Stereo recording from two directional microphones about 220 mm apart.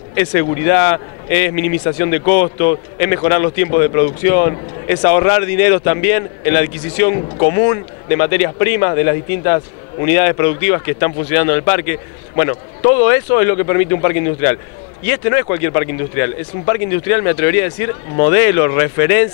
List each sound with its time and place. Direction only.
0.1 s a man's voice: 15° left (ahead or behind)